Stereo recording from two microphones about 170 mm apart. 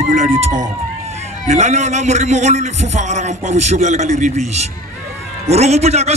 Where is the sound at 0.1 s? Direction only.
45° right (ahead or behind).